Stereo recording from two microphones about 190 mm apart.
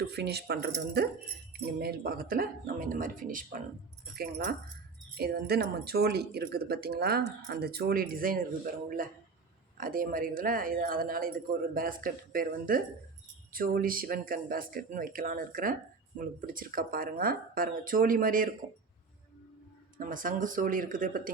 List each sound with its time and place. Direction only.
0.0 s speech: 60° right (ahead or behind)
4.1 s speech: 55° right (ahead or behind)
20.0 s speech: 45° right (ahead or behind)